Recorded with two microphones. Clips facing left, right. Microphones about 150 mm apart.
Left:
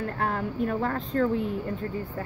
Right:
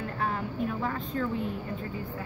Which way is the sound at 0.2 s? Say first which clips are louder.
Left 2 dB; 65° left (ahead or behind).